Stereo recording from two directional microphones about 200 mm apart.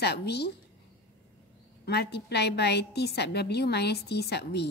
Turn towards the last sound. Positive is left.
turn(degrees=55)  # may be behind; listen again after turning